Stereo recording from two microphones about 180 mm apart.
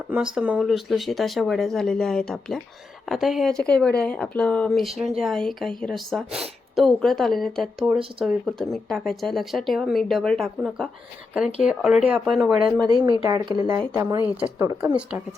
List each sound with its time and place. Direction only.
0.1 s speech: 5° right (ahead or behind)
12.9 s speech: 25° right (ahead or behind)